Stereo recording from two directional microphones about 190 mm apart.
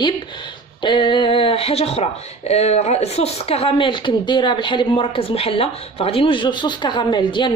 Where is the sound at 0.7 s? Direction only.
25° left (ahead or behind).